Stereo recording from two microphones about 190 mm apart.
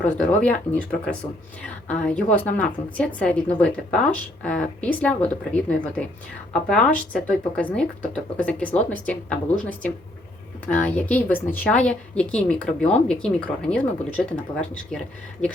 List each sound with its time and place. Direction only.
0.0 s a woman's voice: 5° left (ahead or behind)